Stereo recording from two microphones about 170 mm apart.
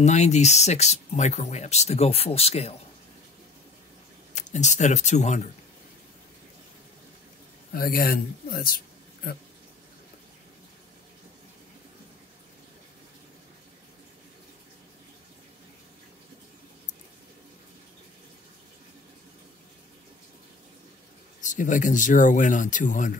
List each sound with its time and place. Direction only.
0.0 s speech: 40° left (ahead or behind)
4.3 s speech: 45° left (ahead or behind)
7.7 s speech: 60° left (ahead or behind)
21.4 s speech: 50° left (ahead or behind)